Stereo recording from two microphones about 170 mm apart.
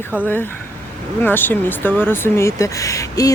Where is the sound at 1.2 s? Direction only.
10° left (ahead or behind).